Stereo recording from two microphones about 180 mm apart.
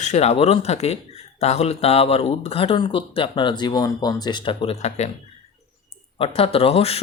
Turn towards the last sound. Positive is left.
turn(degrees=35)  # may be behind; listen again after turning